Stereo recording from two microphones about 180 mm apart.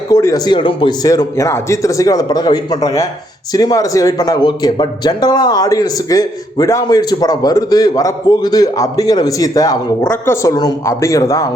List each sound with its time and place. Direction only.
0.1 s a man's voice: 20° left (ahead or behind)